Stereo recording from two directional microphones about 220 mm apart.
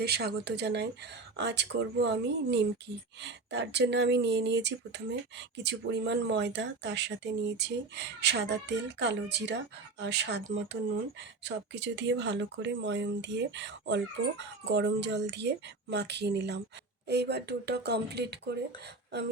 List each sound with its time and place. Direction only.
0.0 s speech: 45° right (ahead or behind)